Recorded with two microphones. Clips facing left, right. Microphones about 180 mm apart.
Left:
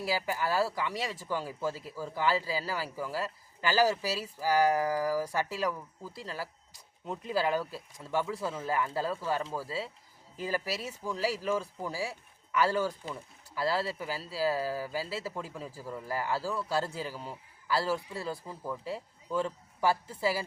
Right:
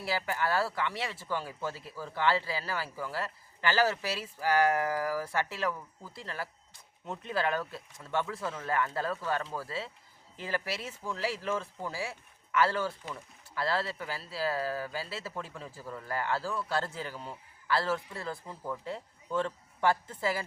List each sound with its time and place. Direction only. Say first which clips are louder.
0.0 s speech: left 1 dB; 10° left (ahead or behind)